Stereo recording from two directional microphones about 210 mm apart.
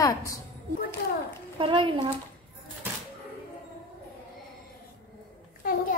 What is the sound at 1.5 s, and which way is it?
Speech, 25° right (ahead or behind).